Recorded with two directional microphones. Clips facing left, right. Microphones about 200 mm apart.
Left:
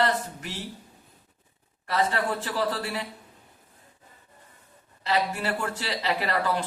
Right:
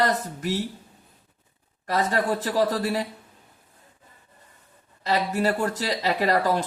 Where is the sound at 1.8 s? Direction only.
40° right (ahead or behind).